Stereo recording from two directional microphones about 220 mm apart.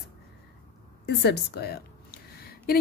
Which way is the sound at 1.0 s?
50° left (ahead or behind).